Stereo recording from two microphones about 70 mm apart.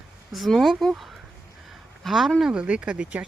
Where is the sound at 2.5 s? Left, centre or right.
Centre.